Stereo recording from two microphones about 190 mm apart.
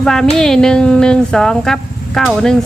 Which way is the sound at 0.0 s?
Centre (ahead or behind).